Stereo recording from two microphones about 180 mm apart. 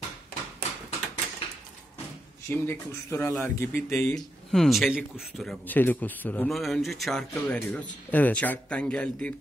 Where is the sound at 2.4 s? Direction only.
15° left (ahead or behind).